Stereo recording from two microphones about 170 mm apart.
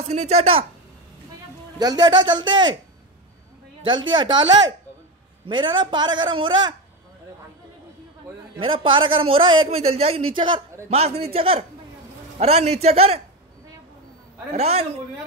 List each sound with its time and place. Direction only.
0.0 s a man's voice: 40° right (ahead or behind)
1.8 s a man's voice: 25° right (ahead or behind)
3.8 s a man's voice: 25° right (ahead or behind)
5.5 s a man's voice: 30° right (ahead or behind)
8.5 s a man's voice: 30° right (ahead or behind)
14.5 s a man's voice: 35° right (ahead or behind)